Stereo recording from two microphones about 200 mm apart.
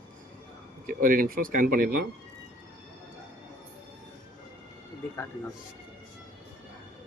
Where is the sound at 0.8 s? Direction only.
45° right (ahead or behind).